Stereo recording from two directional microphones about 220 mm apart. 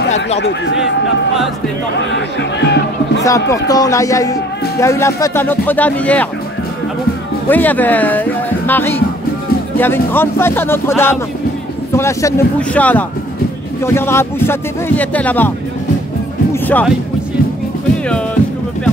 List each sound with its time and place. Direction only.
0.4 s speech: 55° left (ahead or behind)
2.0 s speech: 55° left (ahead or behind)
3.3 s speech: 15° left (ahead or behind)
7.4 s speech: 10° left (ahead or behind)
16.5 s music: 10° left (ahead or behind)
18.0 s music: 5° left (ahead or behind)